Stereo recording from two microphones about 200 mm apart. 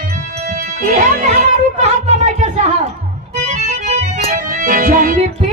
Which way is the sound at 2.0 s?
35° right (ahead or behind).